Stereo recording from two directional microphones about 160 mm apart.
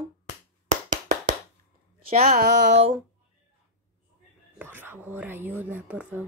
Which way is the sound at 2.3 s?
90° right.